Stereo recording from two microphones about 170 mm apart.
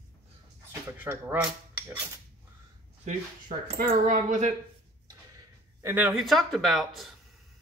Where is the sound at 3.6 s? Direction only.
65° right (ahead or behind); by 4.5 s 45° right (ahead or behind).